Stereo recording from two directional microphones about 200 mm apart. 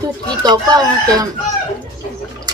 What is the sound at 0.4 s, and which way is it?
Speech, 20° right (ahead or behind).